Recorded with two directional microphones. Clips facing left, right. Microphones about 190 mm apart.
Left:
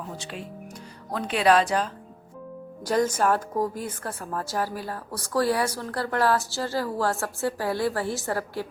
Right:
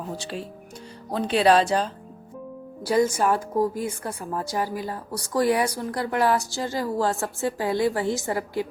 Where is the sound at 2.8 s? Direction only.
10° right (ahead or behind).